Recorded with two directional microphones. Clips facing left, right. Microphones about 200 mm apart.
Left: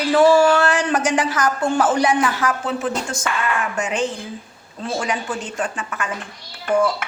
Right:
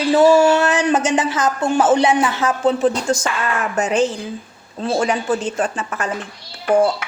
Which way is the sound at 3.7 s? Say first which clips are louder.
Right 5 dB; 40° right (ahead or behind).